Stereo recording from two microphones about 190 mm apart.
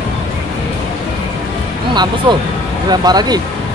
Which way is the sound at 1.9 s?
20° right (ahead or behind).